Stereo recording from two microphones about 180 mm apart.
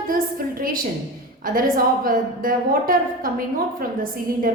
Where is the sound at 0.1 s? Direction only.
50° right (ahead or behind).